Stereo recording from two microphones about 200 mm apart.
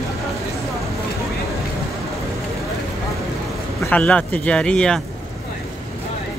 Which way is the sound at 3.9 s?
5° left (ahead or behind).